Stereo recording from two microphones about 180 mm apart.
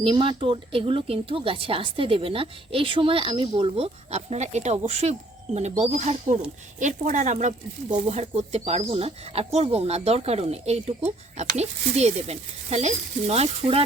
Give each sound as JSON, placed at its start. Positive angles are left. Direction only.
{"t": 0.0, "sound": "speech", "side_deg": -30}